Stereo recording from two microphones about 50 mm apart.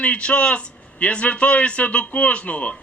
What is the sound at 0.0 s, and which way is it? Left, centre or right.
A man's voice, left.